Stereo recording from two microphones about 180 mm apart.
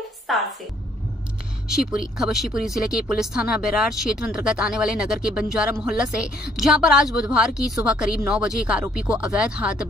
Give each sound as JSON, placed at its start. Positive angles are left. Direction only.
{"t": 0.3, "sound": "speech", "side_deg": 0}
{"t": 1.7, "sound": "speech", "side_deg": -5}